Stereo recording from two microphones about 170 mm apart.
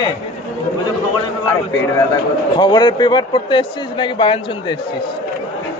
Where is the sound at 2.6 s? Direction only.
25° left (ahead or behind).